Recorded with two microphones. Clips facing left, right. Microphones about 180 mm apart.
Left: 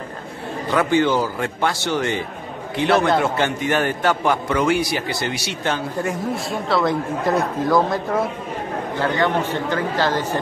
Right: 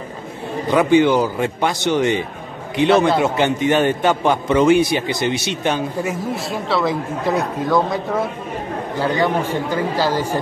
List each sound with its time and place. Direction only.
0.7 s a man's voice: 15° right (ahead or behind)
6.0 s speech: centre (ahead or behind)
9.0 s speech: 10° right (ahead or behind)